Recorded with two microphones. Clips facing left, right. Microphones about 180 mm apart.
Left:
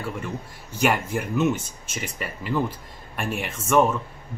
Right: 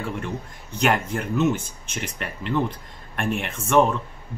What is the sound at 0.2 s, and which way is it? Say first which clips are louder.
Speech: right 1 dB; 5° left (ahead or behind).